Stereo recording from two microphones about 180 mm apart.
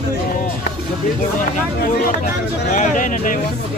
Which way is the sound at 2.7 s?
45° left (ahead or behind).